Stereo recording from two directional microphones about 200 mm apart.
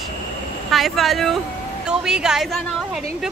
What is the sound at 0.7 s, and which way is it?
A woman's voice, centre (ahead or behind).